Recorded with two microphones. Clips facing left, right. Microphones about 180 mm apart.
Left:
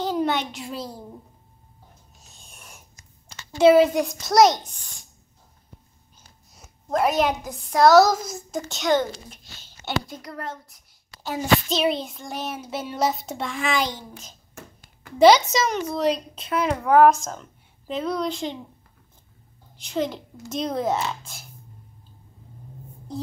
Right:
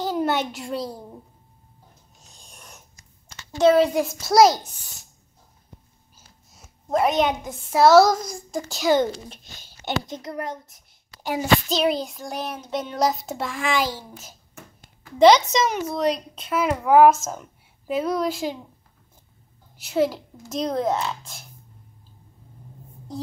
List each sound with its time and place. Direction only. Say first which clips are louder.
0.0 s a child's voice: even; 5° right (ahead or behind)
2.4 s owl: right 1 dB; 5° left (ahead or behind)
3.3 s a woman's voice: left 2 dB; 10° left (ahead or behind)
6.1 s a woman's voice: left 1 dB; centre (ahead or behind)
9.6 s a child's voice: right 1 dB; 15° right (ahead or behind)
11.7 s a woman's voice: right 1 dB; centre (ahead or behind)
15.1 s a woman's voice: even; 5° left (ahead or behind)
19.8 s a woman's voice: right 4 dB; 5° right (ahead or behind)